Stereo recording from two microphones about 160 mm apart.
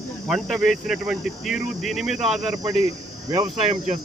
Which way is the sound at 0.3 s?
Centre (ahead or behind).